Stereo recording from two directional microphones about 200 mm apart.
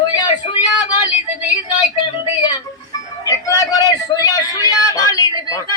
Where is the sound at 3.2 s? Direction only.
15° left (ahead or behind).